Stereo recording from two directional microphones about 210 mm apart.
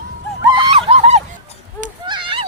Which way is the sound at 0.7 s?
30° right (ahead or behind).